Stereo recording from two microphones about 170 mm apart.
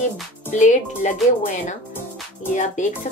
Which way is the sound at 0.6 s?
45° left (ahead or behind).